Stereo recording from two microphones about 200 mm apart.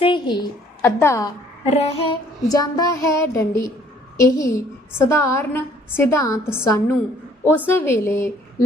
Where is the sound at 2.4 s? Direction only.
20° left (ahead or behind).